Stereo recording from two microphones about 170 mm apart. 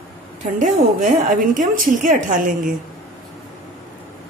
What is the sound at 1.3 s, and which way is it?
A woman's voice, 50° right (ahead or behind).